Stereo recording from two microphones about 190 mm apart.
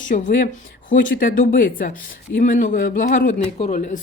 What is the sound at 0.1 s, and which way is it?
A man's voice, 40° left (ahead or behind).